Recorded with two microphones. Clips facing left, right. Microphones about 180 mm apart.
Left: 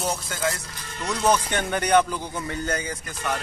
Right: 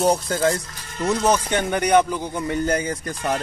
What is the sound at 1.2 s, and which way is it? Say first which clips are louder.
Speech: left 1 dB; 10° right (ahead or behind).